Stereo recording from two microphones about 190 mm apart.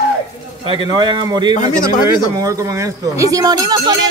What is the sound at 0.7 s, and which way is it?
A man's voice, 25° right (ahead or behind).